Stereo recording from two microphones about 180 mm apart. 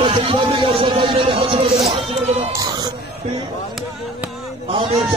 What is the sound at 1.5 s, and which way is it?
Speech, 35° right (ahead or behind).